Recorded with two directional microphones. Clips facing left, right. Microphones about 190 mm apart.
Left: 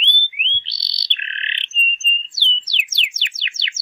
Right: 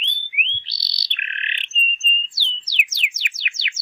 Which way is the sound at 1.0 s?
25° left (ahead or behind).